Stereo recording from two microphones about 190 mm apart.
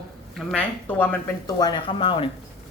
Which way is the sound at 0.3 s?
5° left (ahead or behind).